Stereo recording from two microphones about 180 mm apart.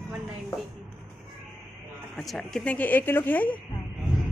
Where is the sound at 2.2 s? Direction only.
Centre (ahead or behind).